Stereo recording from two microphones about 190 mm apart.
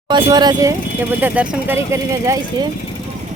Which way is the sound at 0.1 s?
20° right (ahead or behind).